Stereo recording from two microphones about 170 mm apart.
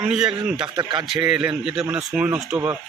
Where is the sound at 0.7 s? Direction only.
25° right (ahead or behind).